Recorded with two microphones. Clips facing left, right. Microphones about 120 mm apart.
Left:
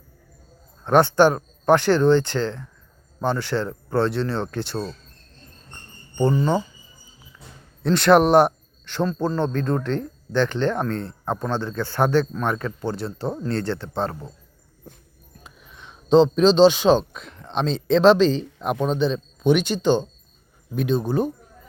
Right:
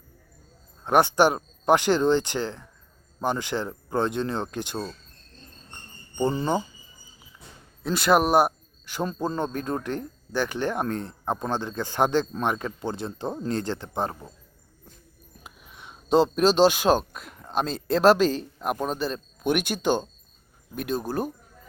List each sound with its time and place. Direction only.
0.9 s speech: 15° right (ahead or behind)
6.2 s speech: 20° right (ahead or behind)
7.9 s speech: 5° right (ahead or behind)
15.4 s speech: 10° right (ahead or behind)